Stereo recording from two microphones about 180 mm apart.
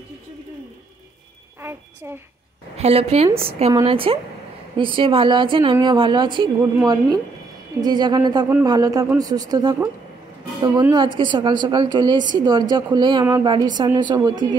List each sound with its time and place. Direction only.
2.8 s a woman's voice: 35° right (ahead or behind)
11.1 s speech: 25° right (ahead or behind)